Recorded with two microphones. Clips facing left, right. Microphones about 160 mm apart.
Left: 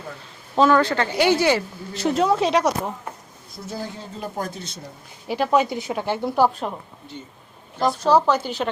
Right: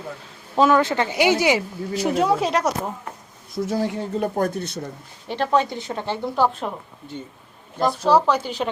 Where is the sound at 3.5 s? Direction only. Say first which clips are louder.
Right 9 dB; 85° right; by 4.8 s 60° right (ahead or behind).